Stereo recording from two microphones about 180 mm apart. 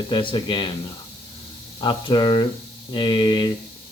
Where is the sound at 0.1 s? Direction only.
30° left (ahead or behind).